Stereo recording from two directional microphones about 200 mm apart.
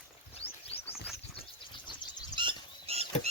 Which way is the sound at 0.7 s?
30° left (ahead or behind).